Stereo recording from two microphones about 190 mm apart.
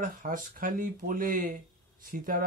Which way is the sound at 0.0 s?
45° right (ahead or behind).